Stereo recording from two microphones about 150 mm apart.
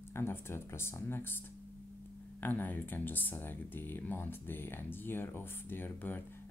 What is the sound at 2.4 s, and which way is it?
Speech, 10° left (ahead or behind).